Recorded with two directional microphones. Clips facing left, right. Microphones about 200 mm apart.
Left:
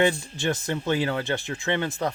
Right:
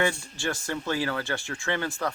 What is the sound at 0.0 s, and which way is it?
Speech, 20° left (ahead or behind).